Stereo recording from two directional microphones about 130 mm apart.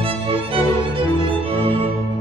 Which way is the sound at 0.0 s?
45° right (ahead or behind).